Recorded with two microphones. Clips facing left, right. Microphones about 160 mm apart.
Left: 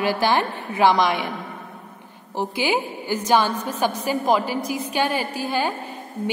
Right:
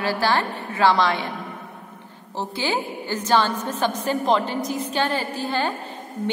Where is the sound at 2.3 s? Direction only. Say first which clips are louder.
Left 3 dB; 15° left (ahead or behind).